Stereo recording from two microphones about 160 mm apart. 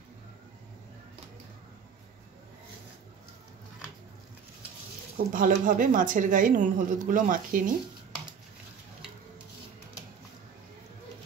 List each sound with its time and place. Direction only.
5.1 s speech: 55° right (ahead or behind)